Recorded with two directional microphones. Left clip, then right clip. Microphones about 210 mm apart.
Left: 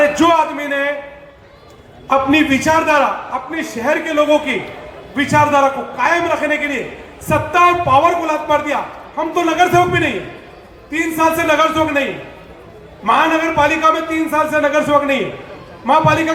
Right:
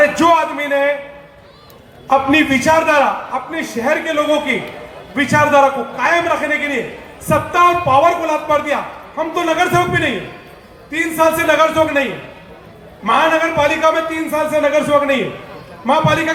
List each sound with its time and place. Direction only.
0.0 s a sound: 5° left (ahead or behind)
2.0 s a man's voice: 5° left (ahead or behind)
13.1 s a man's voice: 5° left (ahead or behind)